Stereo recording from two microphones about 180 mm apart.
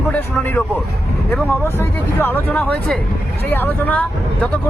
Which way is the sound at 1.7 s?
10° left (ahead or behind).